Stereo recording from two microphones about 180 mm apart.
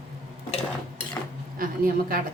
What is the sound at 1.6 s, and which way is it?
Speech, 50° right (ahead or behind).